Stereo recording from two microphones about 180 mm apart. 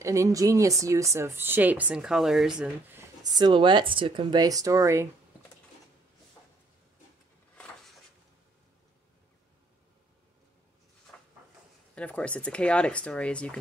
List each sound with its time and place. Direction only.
0.0 s speech: 15° right (ahead or behind)
3.3 s speech: 25° right (ahead or behind)
11.9 s speech: 5° left (ahead or behind)